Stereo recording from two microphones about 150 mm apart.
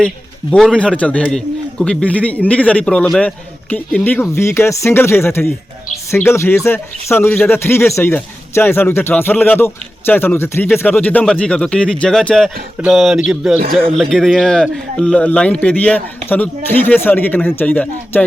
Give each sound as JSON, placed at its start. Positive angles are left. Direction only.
{"t": 0.5, "sound": "a man's voice", "side_deg": 5}